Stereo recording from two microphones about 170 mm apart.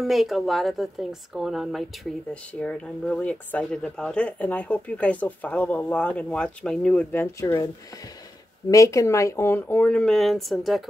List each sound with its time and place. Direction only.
0.0 s a woman's voice: centre (ahead or behind); by 7.6 s 15° left (ahead or behind)
8.6 s speech: 20° left (ahead or behind); by 10.8 s centre (ahead or behind)